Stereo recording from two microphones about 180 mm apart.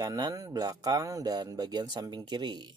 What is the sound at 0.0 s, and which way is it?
Speech, 20° right (ahead or behind).